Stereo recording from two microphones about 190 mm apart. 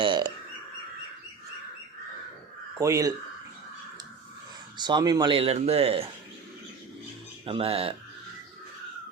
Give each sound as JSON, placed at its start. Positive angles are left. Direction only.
{"t": 0.0, "sound": "bird", "side_deg": -25}
{"t": 2.7, "sound": "speech", "side_deg": -15}
{"t": 4.8, "sound": "speech", "side_deg": -25}
{"t": 7.4, "sound": "speech", "side_deg": -30}